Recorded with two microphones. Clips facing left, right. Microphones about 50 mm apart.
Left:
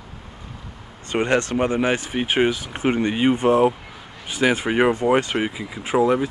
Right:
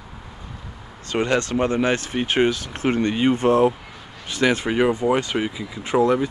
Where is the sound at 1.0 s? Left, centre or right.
Left.